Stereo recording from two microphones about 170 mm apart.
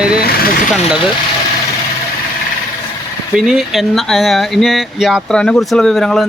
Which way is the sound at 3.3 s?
Centre (ahead or behind).